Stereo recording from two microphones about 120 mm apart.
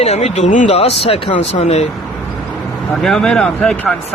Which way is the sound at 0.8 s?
55° left (ahead or behind).